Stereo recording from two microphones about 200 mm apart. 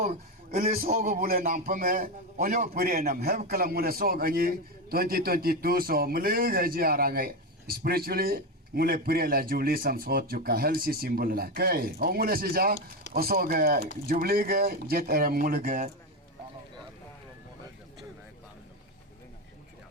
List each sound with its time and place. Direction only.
0.0 s a man's voice: 45° right (ahead or behind)